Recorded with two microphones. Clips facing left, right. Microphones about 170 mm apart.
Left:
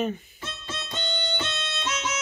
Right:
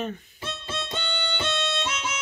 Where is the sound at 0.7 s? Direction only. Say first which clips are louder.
Even; 60° right (ahead or behind).